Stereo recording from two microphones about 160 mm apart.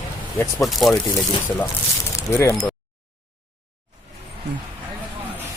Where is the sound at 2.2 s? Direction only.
20° left (ahead or behind).